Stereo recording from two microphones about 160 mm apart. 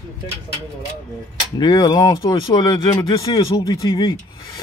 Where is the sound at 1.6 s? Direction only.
25° left (ahead or behind).